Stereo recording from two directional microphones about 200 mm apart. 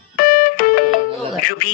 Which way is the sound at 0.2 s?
45° left (ahead or behind).